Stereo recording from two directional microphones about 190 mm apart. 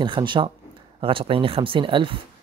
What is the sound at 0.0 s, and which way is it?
Speech, 25° right (ahead or behind).